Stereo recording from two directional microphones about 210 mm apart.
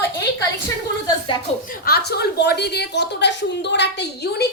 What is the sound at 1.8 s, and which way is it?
A woman's voice, 50° left (ahead or behind).